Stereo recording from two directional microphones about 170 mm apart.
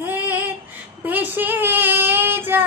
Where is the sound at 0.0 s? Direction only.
10° right (ahead or behind).